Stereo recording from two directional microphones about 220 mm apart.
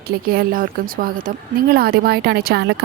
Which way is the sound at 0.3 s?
40° right (ahead or behind).